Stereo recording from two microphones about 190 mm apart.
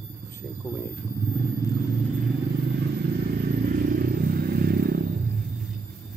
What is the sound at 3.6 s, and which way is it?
Vehicle, 50° right (ahead or behind).